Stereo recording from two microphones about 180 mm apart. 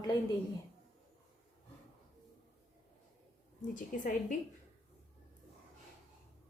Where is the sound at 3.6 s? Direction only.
45° left (ahead or behind).